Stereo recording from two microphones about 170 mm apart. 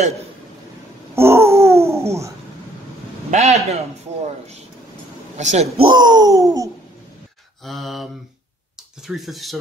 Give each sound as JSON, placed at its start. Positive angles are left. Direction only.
{"t": 1.1, "sound": "babbling", "side_deg": -15}
{"t": 3.3, "sound": "a man's voice", "side_deg": -40}
{"t": 5.4, "sound": "a man's voice", "side_deg": -40}
{"t": 5.9, "sound": "a sound", "side_deg": -25}
{"t": 7.6, "sound": "speech", "side_deg": 0}